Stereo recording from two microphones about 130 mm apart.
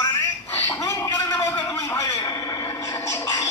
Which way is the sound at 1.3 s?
25° left (ahead or behind).